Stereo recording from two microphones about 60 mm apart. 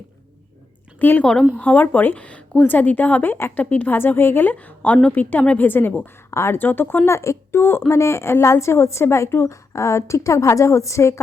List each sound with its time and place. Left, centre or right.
0.9 s speech: left
1.2 s a woman's voice: centre; by 5.9 s left
6.3 s speech: left
6.6 s a woman's voice: left